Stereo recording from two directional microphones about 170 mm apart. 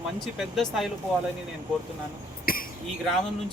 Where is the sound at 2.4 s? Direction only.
55° left (ahead or behind).